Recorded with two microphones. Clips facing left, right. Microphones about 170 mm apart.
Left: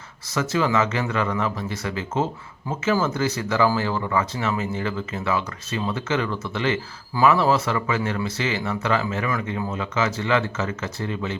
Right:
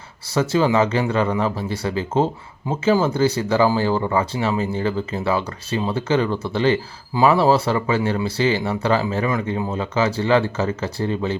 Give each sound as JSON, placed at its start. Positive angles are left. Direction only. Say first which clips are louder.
{"t": 0.3, "sound": "speech", "louder": "right 4 dB", "side_deg": -30}